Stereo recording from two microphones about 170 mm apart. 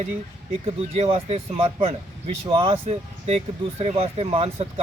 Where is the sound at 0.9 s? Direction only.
35° right (ahead or behind).